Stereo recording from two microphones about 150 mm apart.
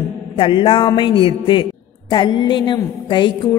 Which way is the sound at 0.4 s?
35° left (ahead or behind).